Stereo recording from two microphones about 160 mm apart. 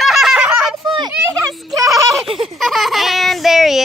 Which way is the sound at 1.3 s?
20° right (ahead or behind).